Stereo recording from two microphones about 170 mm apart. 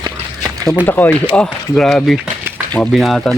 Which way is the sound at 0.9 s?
10° left (ahead or behind).